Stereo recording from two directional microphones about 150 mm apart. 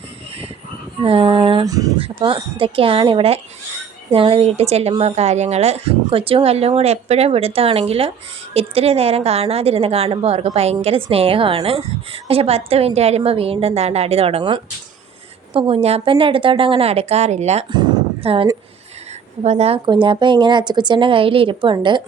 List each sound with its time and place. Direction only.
1.0 s a woman's voice: 35° right (ahead or behind)
1.6 s speech: 25° right (ahead or behind)
2.0 s a woman's voice: 35° right (ahead or behind)
17.7 s a sound: 30° right (ahead or behind)
19.4 s a woman's voice: 45° right (ahead or behind)